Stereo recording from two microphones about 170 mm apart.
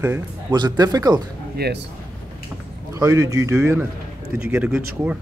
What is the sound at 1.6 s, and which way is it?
Speech, 70° right (ahead or behind).